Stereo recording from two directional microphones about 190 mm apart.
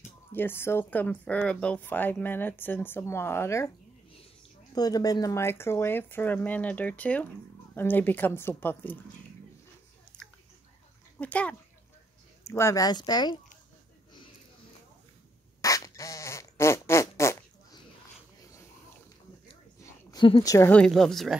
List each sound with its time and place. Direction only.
0.3 s speech: 10° left (ahead or behind)
4.7 s speech: 20° left (ahead or behind)
10.1 s whispering: 5° left (ahead or behind)
11.1 s speech: 5° left (ahead or behind)
15.6 s fart: 15° left (ahead or behind)
19.8 s a sound: 20° left (ahead or behind)
20.5 s speech: 10° left (ahead or behind)